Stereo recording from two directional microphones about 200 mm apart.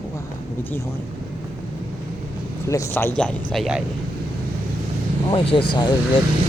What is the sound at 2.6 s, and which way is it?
Speech, 15° left (ahead or behind).